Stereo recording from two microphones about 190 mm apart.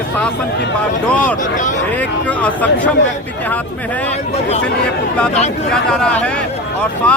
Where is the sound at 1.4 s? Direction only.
40° left (ahead or behind).